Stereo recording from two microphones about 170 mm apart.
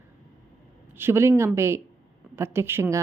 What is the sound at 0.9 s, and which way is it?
Speech, 15° right (ahead or behind).